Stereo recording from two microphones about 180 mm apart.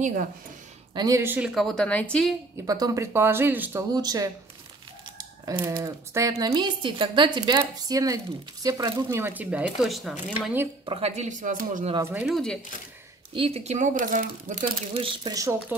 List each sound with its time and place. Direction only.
0.9 s a woman's voice: 20° right (ahead or behind); by 2.3 s 5° left (ahead or behind)
2.6 s speech: 20° right (ahead or behind)
10.9 s speech: 35° right (ahead or behind)
11.9 s speech: 15° right (ahead or behind)
13.3 s speech: 30° right (ahead or behind)
15.0 s speech: 20° right (ahead or behind)